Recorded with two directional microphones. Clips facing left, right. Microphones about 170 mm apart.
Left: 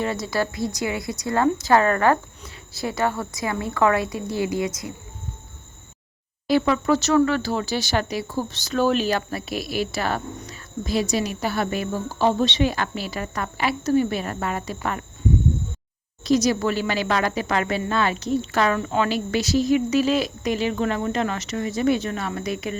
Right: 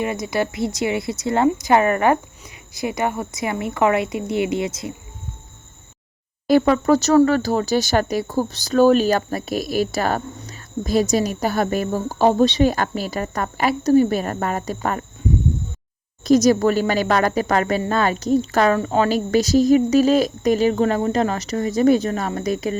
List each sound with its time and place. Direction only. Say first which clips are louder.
0.0 s speech: right 2 dB; 15° right (ahead or behind)
6.5 s speech: right 4 dB; 45° right (ahead or behind)
16.2 s speech: right 5 dB; 45° right (ahead or behind)